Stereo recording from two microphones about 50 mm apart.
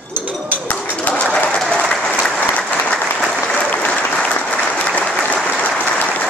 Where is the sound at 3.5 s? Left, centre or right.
Left.